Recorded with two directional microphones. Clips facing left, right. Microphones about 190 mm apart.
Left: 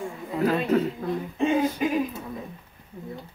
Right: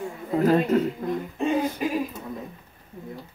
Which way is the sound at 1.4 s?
Centre (ahead or behind).